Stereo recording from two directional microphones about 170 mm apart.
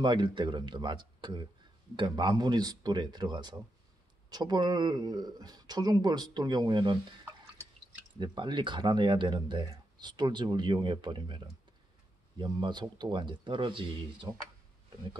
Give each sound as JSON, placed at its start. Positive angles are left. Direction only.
{"t": 0.0, "sound": "speech", "side_deg": -25}
{"t": 8.2, "sound": "speech", "side_deg": -25}